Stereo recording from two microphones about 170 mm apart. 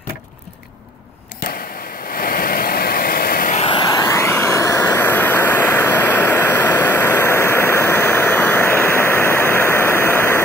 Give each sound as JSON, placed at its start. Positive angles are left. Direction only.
{"t": 2.1, "sound": "vehicle", "side_deg": 55}
{"t": 3.6, "sound": "vehicle", "side_deg": 25}